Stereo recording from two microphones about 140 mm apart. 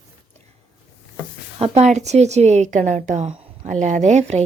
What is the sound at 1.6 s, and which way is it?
A woman's voice, 45° right (ahead or behind).